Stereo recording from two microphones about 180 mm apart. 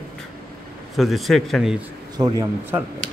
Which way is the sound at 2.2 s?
20° right (ahead or behind).